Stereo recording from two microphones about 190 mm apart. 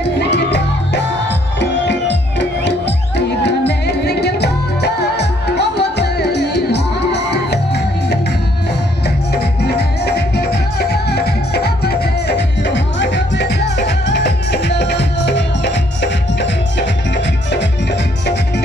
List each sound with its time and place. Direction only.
0.0 s music: 65° left (ahead or behind)
9.3 s music: 60° left (ahead or behind)